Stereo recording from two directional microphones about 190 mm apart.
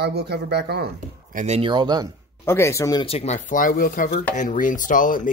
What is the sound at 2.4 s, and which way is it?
Speech, 15° left (ahead or behind).